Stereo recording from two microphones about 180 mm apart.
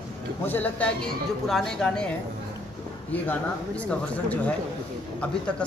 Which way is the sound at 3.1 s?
10° left (ahead or behind).